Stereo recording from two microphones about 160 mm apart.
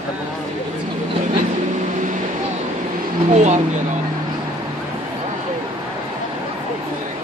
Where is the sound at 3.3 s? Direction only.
45° right (ahead or behind).